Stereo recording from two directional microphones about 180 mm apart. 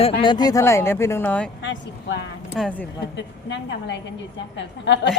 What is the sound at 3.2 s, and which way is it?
A woman's voice, 85° left.